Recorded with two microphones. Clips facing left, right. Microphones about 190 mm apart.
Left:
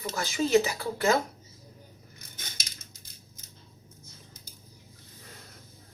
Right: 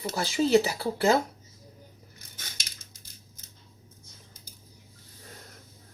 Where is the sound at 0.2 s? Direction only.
30° right (ahead or behind).